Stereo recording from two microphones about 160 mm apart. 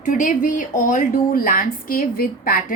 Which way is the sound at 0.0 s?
55° left (ahead or behind).